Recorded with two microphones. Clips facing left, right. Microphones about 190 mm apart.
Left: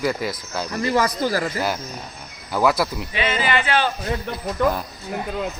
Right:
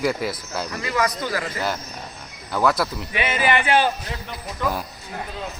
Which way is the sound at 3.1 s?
15° right (ahead or behind).